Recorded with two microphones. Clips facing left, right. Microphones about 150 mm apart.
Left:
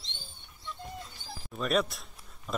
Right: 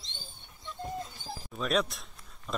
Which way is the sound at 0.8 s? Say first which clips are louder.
Right 10 dB; 40° right (ahead or behind).